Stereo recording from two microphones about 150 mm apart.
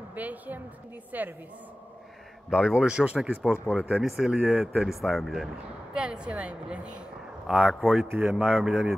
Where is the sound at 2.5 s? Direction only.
5° right (ahead or behind).